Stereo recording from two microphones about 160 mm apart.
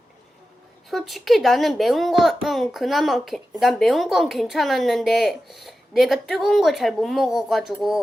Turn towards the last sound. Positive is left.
turn(degrees=0)  # may be behind; listen again after turning